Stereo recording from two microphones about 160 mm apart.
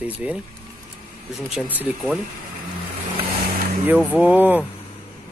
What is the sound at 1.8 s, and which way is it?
Speech, 10° right (ahead or behind).